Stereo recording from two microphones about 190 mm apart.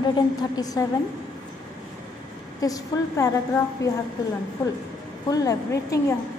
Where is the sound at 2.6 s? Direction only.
20° left (ahead or behind).